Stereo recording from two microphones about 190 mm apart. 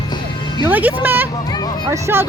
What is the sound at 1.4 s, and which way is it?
Speech, 20° left (ahead or behind).